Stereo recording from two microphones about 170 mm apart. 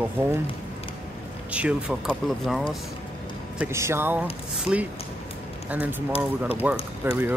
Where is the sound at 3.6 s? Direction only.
15° right (ahead or behind).